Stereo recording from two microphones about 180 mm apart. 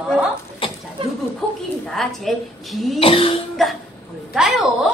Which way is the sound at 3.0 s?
30° left (ahead or behind).